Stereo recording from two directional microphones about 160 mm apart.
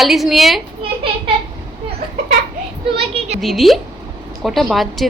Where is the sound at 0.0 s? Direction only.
Centre (ahead or behind).